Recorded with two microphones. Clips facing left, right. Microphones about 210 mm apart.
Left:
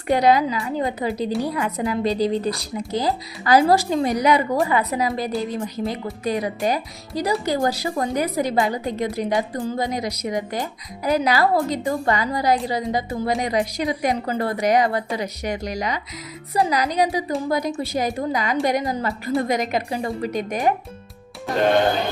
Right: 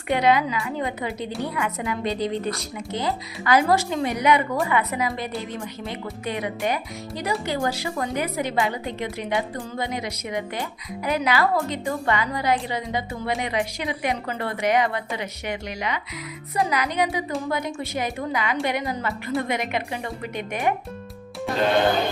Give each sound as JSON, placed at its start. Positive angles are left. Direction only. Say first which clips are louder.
{"t": 0.1, "sound": "a woman's voice", "louder": "left 3 dB", "side_deg": 35}